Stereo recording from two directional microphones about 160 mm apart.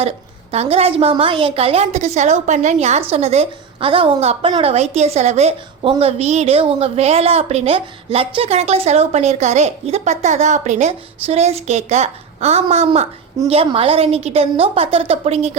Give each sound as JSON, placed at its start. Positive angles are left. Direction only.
{"t": 0.5, "sound": "a woman's voice", "side_deg": -40}